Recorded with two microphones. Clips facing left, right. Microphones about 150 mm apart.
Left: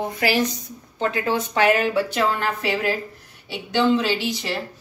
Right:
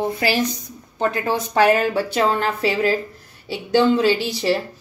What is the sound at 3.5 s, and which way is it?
Speech, 35° right (ahead or behind).